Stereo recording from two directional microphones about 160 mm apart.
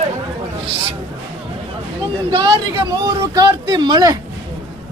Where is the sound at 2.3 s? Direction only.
30° right (ahead or behind).